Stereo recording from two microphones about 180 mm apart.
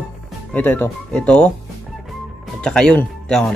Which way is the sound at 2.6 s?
5° left (ahead or behind).